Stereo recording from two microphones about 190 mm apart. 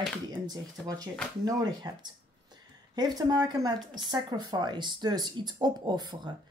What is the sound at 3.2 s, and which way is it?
Speech, 20° right (ahead or behind).